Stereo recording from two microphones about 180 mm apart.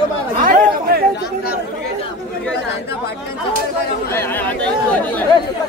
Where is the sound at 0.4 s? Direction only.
45° right (ahead or behind).